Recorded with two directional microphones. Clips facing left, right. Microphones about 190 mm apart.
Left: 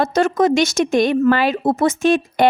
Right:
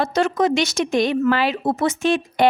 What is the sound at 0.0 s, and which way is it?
A woman's voice, 45° left (ahead or behind).